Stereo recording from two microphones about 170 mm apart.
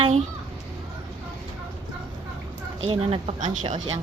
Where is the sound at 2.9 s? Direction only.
35° right (ahead or behind).